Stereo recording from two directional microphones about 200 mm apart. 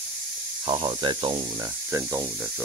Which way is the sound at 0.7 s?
25° right (ahead or behind).